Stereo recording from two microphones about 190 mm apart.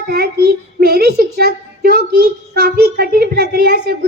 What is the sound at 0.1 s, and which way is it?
A child's voice, 55° right (ahead or behind).